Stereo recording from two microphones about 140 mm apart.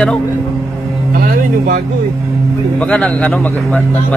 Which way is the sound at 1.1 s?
90° right.